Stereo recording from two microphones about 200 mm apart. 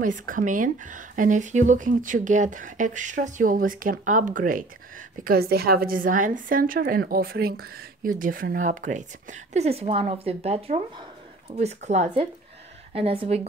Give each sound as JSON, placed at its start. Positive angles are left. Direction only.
{"t": 0.0, "sound": "a woman's voice", "side_deg": -40}